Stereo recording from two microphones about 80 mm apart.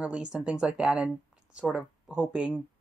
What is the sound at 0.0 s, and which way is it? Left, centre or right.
Speech, centre.